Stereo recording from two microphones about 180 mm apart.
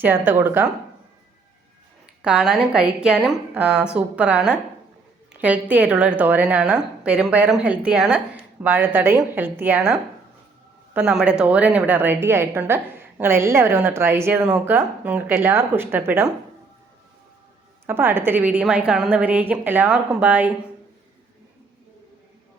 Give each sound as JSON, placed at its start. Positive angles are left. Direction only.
{"t": 0.0, "sound": "a woman's voice", "side_deg": -10}
{"t": 2.2, "sound": "a woman's voice", "side_deg": -5}
{"t": 17.8, "sound": "a woman's voice", "side_deg": -10}